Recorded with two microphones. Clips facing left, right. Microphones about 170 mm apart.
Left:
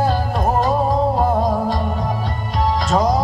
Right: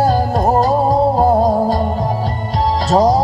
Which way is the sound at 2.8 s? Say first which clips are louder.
Right 6 dB; 35° right (ahead or behind).